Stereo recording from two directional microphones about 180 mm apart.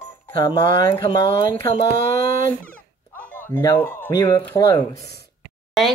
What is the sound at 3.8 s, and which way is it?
Speech, 10° left (ahead or behind).